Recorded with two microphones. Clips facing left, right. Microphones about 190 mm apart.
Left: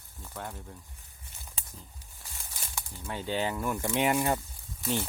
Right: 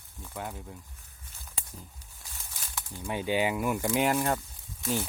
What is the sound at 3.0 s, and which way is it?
Speech, 15° right (ahead or behind).